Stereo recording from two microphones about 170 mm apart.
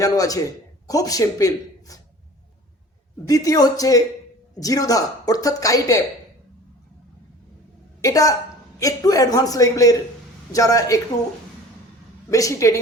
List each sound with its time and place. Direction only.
0.0 s speech: 20° left (ahead or behind)
3.2 s speech: 20° left (ahead or behind)
8.0 s speech: 20° left (ahead or behind)
12.3 s speech: 20° left (ahead or behind)